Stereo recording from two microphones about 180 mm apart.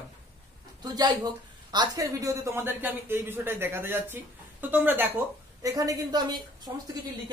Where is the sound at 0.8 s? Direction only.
20° right (ahead or behind).